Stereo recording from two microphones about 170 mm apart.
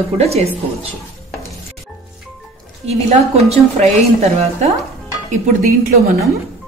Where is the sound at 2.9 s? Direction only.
40° right (ahead or behind).